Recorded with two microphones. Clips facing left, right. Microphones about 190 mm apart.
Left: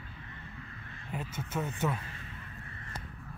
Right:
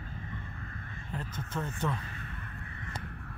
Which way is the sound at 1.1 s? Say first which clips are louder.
Left 1 dB; 10° left (ahead or behind).